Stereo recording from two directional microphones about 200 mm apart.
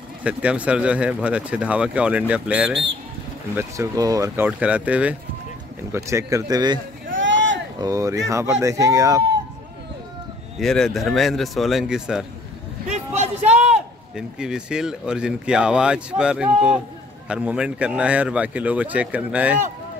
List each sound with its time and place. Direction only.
0.2 s speech: 5° right (ahead or behind)
7.2 s vehicle: 65° right (ahead or behind)
7.8 s speech: 15° right (ahead or behind)
10.6 s speech: centre (ahead or behind)
12.9 s a sound: 35° right (ahead or behind)
13.5 s speech: 5° right (ahead or behind)